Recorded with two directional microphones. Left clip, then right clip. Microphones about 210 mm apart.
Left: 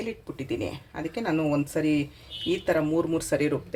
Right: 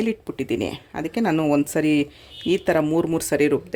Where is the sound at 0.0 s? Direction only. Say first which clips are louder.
Right 8 dB; 55° right (ahead or behind).